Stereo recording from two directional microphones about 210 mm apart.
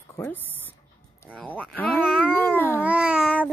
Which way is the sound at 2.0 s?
5° right (ahead or behind).